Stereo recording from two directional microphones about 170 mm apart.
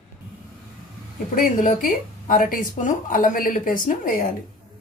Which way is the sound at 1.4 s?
50° left (ahead or behind).